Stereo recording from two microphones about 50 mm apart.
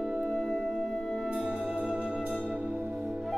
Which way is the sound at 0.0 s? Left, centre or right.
Centre.